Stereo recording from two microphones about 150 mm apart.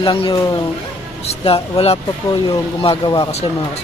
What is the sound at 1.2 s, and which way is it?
Speech, 40° left (ahead or behind).